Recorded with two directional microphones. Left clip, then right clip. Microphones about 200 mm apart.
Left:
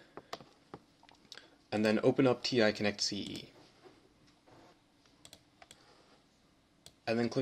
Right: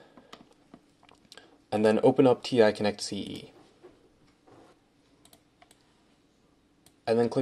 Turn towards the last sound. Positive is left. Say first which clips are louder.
# right 8 dB
turn(degrees=-20)  # may be behind; listen again after turning